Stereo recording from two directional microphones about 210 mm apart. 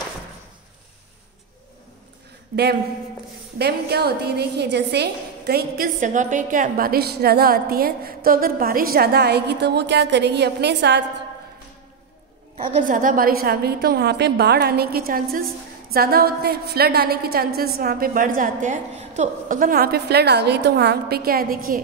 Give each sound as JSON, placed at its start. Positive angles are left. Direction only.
{"t": 2.5, "sound": "a woman's voice", "side_deg": -50}
{"t": 12.7, "sound": "a woman's voice", "side_deg": -40}